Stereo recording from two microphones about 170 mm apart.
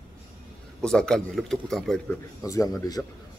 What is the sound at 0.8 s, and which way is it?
Speech, 5° left (ahead or behind).